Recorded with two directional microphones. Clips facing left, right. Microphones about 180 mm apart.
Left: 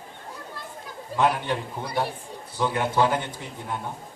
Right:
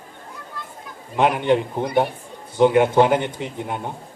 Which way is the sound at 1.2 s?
20° right (ahead or behind).